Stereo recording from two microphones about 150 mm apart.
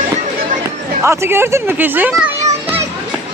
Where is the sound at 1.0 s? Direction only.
15° right (ahead or behind).